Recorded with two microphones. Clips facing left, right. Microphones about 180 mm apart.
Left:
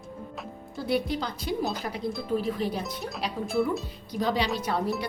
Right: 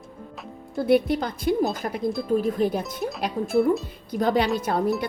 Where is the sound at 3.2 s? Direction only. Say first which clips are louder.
Right 6 dB; 50° right (ahead or behind).